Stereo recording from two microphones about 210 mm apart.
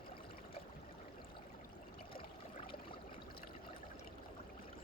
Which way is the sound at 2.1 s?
25° left (ahead or behind).